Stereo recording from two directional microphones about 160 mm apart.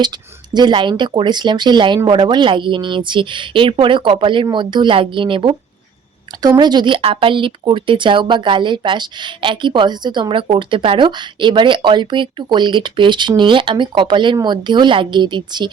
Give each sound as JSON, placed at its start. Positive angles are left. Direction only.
{"t": 0.5, "sound": "speech", "side_deg": -30}
{"t": 6.6, "sound": "speech", "side_deg": -25}